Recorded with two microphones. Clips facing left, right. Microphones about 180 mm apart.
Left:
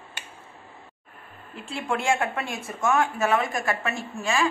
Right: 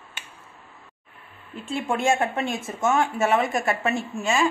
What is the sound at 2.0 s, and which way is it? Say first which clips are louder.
Speech: right 4 dB; 25° right (ahead or behind).